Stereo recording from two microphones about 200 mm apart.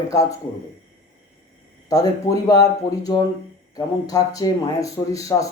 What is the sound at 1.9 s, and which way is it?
Speech, 15° left (ahead or behind).